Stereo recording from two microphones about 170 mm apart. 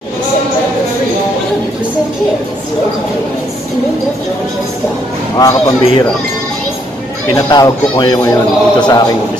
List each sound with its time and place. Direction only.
5.4 s a man's voice: 20° left (ahead or behind)
7.3 s a man's voice: 20° left (ahead or behind)